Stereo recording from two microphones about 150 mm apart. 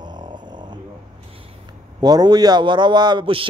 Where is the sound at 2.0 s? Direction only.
25° right (ahead or behind).